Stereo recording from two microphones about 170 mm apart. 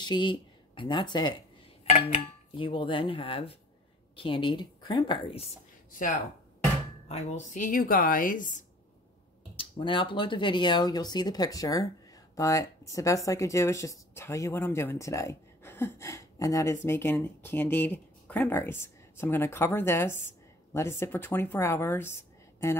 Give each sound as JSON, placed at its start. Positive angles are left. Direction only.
{"t": 0.0, "sound": "speech", "side_deg": 25}
{"t": 2.5, "sound": "speech", "side_deg": 30}
{"t": 5.9, "sound": "speech", "side_deg": 50}
{"t": 7.1, "sound": "speech", "side_deg": 40}
{"t": 9.6, "sound": "speech", "side_deg": 30}